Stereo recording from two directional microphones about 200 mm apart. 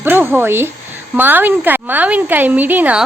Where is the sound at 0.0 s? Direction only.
10° right (ahead or behind).